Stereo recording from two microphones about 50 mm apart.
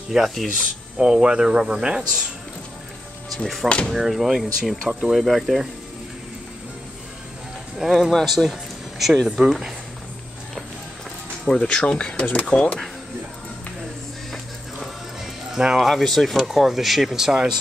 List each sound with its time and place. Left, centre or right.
0.1 s speech: centre
3.6 s speech: left
3.9 s speech: centre
7.8 s speech: centre
8.1 s speech: centre
9.4 s speech: centre
11.6 s speech: centre
15.5 s speech: centre
15.9 s speech: centre